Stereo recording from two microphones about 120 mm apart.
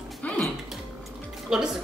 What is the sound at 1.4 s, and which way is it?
Speech, 5° right (ahead or behind).